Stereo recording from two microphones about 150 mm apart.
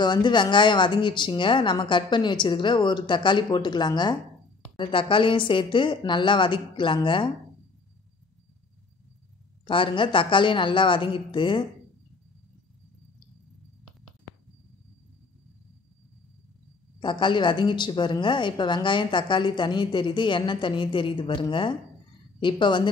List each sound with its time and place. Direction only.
0.0 s a woman's voice: 30° left (ahead or behind)
9.7 s a woman's voice: 35° left (ahead or behind)
17.0 s a woman's voice: 30° left (ahead or behind)